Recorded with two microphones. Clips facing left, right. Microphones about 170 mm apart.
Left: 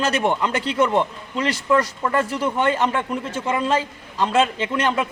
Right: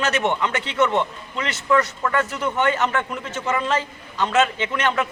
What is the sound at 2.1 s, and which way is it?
A man's voice, 30° left (ahead or behind).